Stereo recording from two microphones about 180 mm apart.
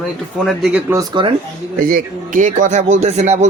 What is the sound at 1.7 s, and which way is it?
A man's voice, 50° right (ahead or behind).